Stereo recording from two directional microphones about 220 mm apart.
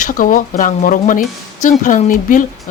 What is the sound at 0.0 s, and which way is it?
Speech, 35° left (ahead or behind).